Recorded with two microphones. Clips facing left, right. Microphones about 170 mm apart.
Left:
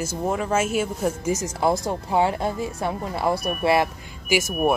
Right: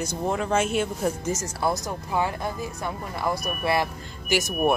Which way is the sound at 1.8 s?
25° left (ahead or behind).